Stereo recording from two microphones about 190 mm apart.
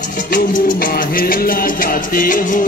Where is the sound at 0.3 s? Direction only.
45° left (ahead or behind).